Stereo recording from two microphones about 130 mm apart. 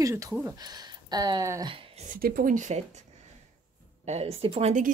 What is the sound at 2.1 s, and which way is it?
Speech, 90° right.